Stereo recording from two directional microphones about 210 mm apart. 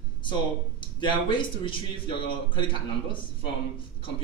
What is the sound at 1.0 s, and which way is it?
A man's voice, 20° left (ahead or behind).